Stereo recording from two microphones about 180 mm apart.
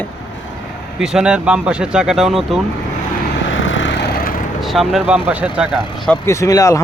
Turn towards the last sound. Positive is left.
turn(degrees=20)  # may be behind; listen again after turning